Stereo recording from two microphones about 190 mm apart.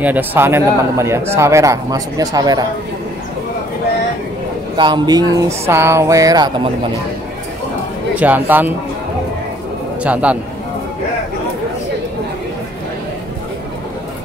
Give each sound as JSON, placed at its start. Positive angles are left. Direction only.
{"t": 0.0, "sound": "speech", "side_deg": -10}
{"t": 4.7, "sound": "speech", "side_deg": -25}
{"t": 8.2, "sound": "speech", "side_deg": -10}
{"t": 10.0, "sound": "speech", "side_deg": -5}